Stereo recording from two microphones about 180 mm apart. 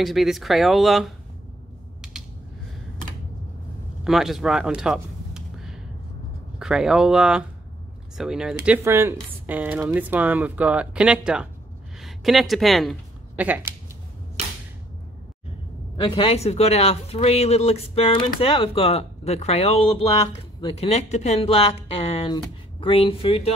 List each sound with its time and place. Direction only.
0.0 s speech: centre (ahead or behind)
4.0 s a sound: centre (ahead or behind)
6.6 s speech: 5° right (ahead or behind)
16.0 s speech: 30° left (ahead or behind)